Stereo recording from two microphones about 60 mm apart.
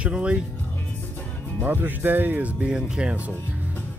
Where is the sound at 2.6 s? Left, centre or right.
Centre.